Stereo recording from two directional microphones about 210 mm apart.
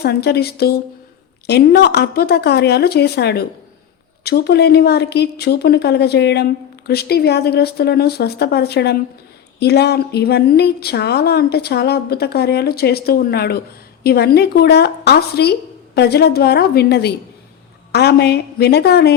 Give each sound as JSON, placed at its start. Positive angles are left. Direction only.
{"t": 0.0, "sound": "a woman's voice", "side_deg": 50}